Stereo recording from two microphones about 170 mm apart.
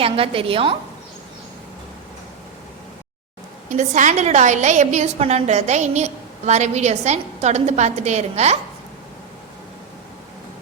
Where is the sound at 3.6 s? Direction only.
45° right (ahead or behind).